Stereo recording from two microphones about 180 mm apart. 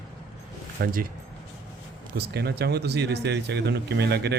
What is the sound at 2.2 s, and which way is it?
Speech, 65° right (ahead or behind).